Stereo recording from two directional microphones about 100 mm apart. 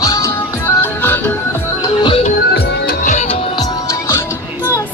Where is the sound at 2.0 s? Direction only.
65° left (ahead or behind).